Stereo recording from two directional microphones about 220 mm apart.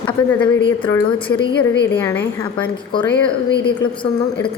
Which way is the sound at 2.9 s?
20° left (ahead or behind).